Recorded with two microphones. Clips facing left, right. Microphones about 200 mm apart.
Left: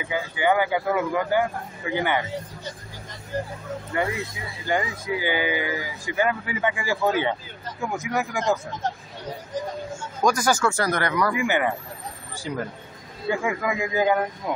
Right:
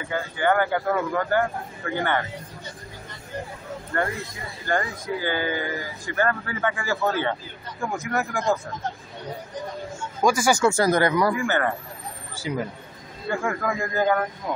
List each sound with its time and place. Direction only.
0.0 s speech: 10° left (ahead or behind)
3.9 s speech: 10° left (ahead or behind)
10.2 s speech: 10° right (ahead or behind)
10.6 s speech: 25° right (ahead or behind)
11.3 s speech: 15° left (ahead or behind)
12.4 s speech: 5° right (ahead or behind)
13.3 s speech: 5° left (ahead or behind)